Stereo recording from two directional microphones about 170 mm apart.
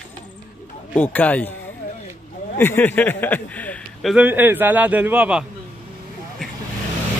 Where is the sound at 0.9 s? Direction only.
10° left (ahead or behind).